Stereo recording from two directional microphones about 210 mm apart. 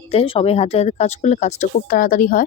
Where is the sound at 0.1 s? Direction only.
30° left (ahead or behind).